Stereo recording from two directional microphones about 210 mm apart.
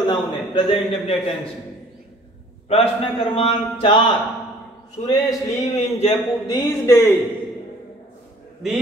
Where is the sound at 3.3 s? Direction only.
25° left (ahead or behind).